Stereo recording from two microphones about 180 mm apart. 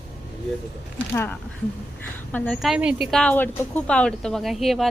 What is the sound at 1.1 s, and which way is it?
A woman's voice, 15° left (ahead or behind).